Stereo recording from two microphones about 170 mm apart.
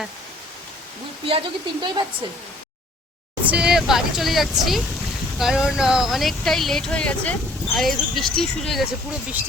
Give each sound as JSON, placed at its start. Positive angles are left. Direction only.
{"t": 1.2, "sound": "speech", "side_deg": -30}
{"t": 3.4, "sound": "speech", "side_deg": -5}